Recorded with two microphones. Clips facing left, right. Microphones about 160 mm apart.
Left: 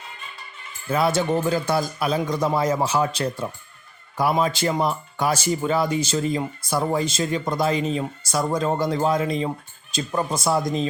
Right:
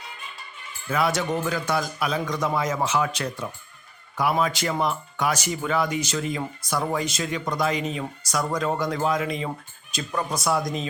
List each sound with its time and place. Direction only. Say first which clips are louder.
0.9 s a man's voice: left 3 dB; 30° left (ahead or behind)